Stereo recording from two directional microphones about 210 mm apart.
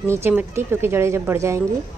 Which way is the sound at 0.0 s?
10° right (ahead or behind).